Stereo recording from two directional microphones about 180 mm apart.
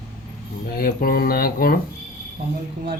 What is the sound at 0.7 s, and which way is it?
Speech, 55° left (ahead or behind).